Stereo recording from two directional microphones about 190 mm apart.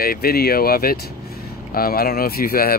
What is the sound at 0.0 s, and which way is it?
Speech, 50° left (ahead or behind).